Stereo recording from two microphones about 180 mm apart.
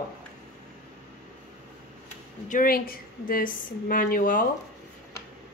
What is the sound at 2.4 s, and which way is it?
A woman's voice, 50° left (ahead or behind).